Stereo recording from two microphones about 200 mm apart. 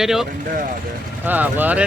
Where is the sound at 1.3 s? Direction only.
10° right (ahead or behind).